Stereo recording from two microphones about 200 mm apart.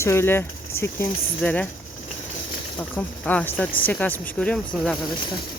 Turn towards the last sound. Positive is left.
turn(degrees=5)  # may be behind; listen again after turning